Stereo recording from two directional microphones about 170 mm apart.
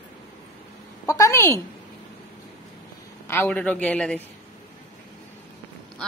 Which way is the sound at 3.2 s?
10° left (ahead or behind).